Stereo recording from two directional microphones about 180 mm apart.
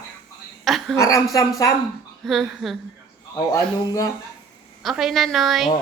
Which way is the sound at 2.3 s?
Centre (ahead or behind).